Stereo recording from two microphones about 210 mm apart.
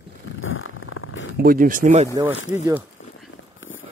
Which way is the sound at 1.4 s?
40° right (ahead or behind).